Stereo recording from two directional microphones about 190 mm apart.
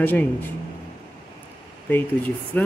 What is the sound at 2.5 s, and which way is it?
Speech, 10° left (ahead or behind).